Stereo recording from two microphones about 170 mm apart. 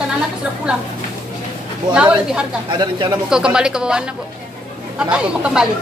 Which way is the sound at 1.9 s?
5° right (ahead or behind).